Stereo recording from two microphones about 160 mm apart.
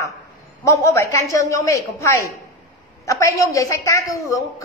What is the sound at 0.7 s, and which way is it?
A woman's voice, 15° left (ahead or behind).